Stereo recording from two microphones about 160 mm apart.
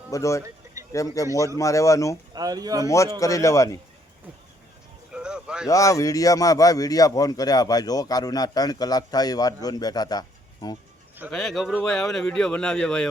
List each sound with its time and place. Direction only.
0.1 s a man's voice: 20° left (ahead or behind)
0.4 s a sound: 20° right (ahead or behind)
0.9 s a man's voice: 20° left (ahead or behind)
2.3 s speech: 25° right (ahead or behind)
3.2 s a man's voice: 20° left (ahead or behind)
5.1 s a sound: 5° right (ahead or behind)
5.6 s a man's voice: 20° left (ahead or behind)
11.3 s speech: 5° left (ahead or behind)